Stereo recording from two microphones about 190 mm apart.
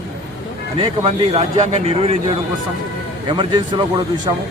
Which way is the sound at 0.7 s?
30° right (ahead or behind).